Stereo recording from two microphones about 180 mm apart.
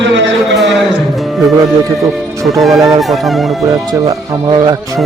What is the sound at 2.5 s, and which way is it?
Speech, centre (ahead or behind).